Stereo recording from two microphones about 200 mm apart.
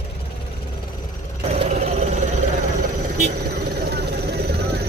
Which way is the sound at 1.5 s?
35° right (ahead or behind).